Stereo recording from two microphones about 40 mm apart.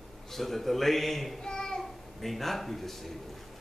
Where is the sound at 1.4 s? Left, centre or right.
Centre.